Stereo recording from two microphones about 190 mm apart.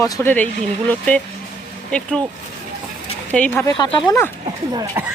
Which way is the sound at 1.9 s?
5° left (ahead or behind).